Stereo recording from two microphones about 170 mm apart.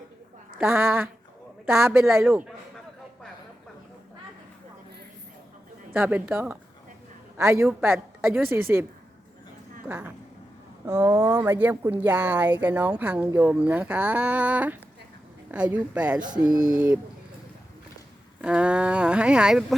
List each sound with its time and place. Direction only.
0.6 s speech: 15° right (ahead or behind)
5.9 s a woman's voice: 10° right (ahead or behind)
9.8 s a woman's voice: 10° right (ahead or behind)
18.4 s speech: 5° right (ahead or behind)